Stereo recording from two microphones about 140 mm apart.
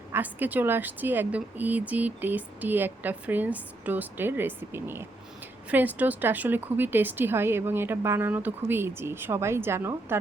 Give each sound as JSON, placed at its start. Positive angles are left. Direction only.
{"t": 0.1, "sound": "speech", "side_deg": -10}